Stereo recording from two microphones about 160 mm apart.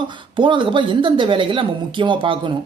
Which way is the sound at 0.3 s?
30° right (ahead or behind).